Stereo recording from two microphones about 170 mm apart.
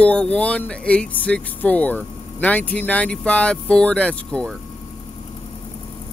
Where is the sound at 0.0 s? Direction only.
5° left (ahead or behind).